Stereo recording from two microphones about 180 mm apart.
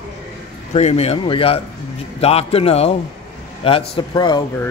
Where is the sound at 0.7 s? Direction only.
35° left (ahead or behind).